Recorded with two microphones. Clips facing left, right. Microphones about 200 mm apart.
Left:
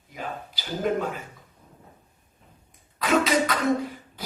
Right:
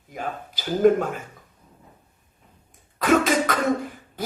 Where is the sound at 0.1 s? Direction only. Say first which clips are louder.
Right 3 dB; 50° right (ahead or behind).